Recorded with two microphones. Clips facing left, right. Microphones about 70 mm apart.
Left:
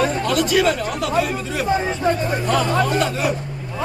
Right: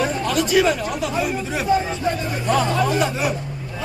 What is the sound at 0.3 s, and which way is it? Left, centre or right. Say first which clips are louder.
Speech: right 2 dB; centre.